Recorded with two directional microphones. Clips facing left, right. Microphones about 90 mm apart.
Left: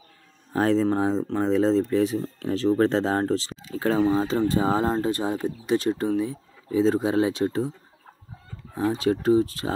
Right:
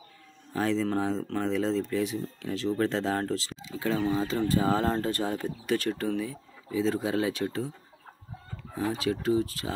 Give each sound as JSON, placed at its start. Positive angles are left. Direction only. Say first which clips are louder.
{"t": 0.5, "sound": "speech", "louder": "left 6 dB", "side_deg": 40}
{"t": 3.5, "sound": "a sound", "louder": "left 6 dB", "side_deg": 50}
{"t": 4.1, "sound": "speech", "louder": "left 5 dB", "side_deg": 35}
{"t": 4.4, "sound": "speech", "louder": "left 3 dB", "side_deg": 25}
{"t": 8.7, "sound": "speech", "louder": "left 6 dB", "side_deg": 35}